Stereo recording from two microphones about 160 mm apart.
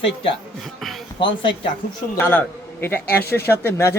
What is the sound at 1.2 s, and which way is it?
Speech, 30° left (ahead or behind).